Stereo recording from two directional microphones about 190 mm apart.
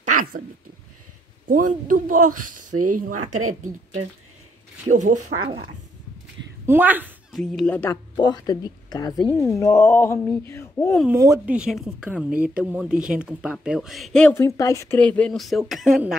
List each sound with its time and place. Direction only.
0.0 s a sound: 45° right (ahead or behind)
1.5 s a man's voice: 45° right (ahead or behind)
5.4 s speech: 25° right (ahead or behind)
6.6 s speech: 10° right (ahead or behind)
7.5 s speech: 5° left (ahead or behind)
7.9 s a woman's voice: 20° left (ahead or behind)
11.1 s speech: 15° right (ahead or behind)